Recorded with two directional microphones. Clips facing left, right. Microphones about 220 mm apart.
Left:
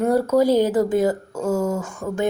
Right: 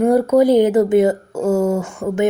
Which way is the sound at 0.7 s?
25° right (ahead or behind).